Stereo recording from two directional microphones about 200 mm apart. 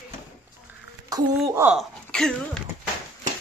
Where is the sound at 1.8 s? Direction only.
5° left (ahead or behind).